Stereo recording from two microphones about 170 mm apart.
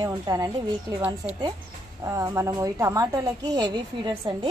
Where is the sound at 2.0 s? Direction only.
15° right (ahead or behind).